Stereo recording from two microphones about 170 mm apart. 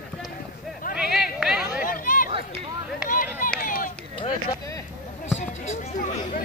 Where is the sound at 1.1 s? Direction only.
5° right (ahead or behind).